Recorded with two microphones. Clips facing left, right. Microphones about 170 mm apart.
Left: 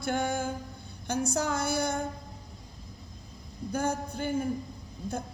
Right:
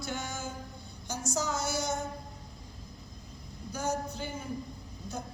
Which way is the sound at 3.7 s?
55° left (ahead or behind).